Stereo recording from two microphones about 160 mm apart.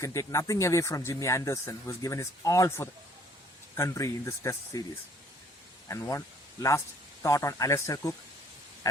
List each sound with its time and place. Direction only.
0.0 s speech: 20° left (ahead or behind)
5.9 s a man's voice: 20° left (ahead or behind)